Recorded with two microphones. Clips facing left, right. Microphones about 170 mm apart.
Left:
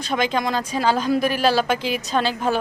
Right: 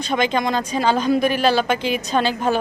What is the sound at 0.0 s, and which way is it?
A woman's voice, 5° left (ahead or behind).